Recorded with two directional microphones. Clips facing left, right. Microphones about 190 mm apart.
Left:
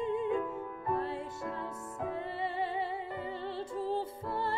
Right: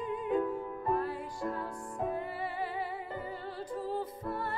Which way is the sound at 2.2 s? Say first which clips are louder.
Left 1 dB; 25° left (ahead or behind).